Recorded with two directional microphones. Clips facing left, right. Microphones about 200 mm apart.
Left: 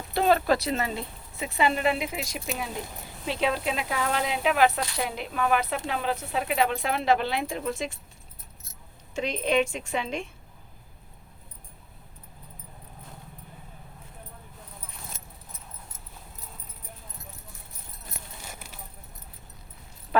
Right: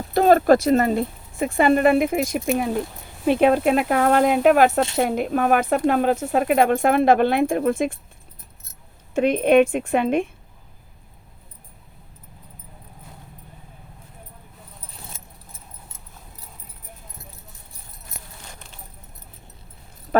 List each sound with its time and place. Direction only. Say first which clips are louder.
0.1 s speech: right 8 dB; 45° right (ahead or behind)
9.1 s a woman's voice: right 10 dB; 55° right (ahead or behind)
18.4 s a sound: even; 10° left (ahead or behind)